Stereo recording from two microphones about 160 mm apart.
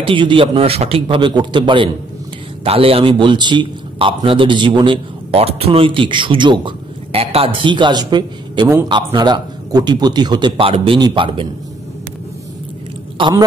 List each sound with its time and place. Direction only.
0.0 s a man's voice: 30° right (ahead or behind)
13.2 s speech: 30° right (ahead or behind)